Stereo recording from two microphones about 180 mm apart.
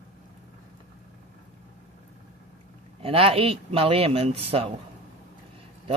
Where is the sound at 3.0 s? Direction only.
30° right (ahead or behind).